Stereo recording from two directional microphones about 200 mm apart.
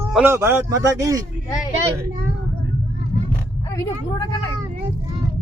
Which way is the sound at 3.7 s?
20° left (ahead or behind).